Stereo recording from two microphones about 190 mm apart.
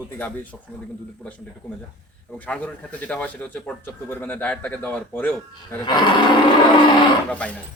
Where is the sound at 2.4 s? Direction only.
5° left (ahead or behind).